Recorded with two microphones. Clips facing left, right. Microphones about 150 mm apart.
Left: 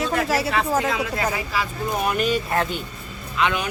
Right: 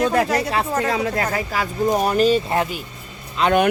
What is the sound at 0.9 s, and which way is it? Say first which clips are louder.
Speech: right 3 dB; 40° right (ahead or behind).